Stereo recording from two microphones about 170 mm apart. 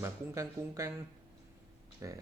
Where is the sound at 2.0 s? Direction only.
20° right (ahead or behind).